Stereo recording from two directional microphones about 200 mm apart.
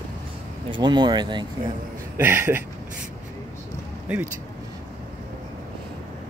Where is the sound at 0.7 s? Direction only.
20° right (ahead or behind).